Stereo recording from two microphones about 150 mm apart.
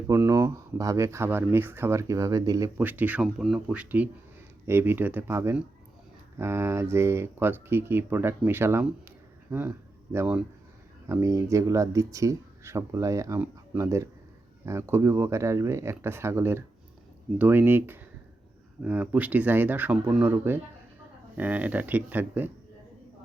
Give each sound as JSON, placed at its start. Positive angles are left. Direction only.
{"t": 0.1, "sound": "speech", "side_deg": -20}